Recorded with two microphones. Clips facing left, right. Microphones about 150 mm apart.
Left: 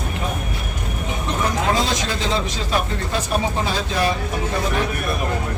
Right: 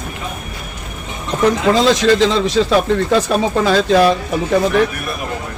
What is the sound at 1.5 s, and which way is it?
A man's voice, 90° right.